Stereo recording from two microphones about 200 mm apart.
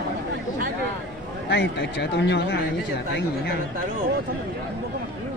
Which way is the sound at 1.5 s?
60° left (ahead or behind).